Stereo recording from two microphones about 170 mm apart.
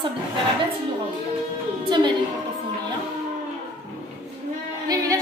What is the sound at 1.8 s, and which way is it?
Speech, 25° right (ahead or behind).